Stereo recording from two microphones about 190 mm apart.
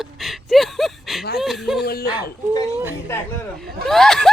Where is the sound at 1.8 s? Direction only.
55° left (ahead or behind).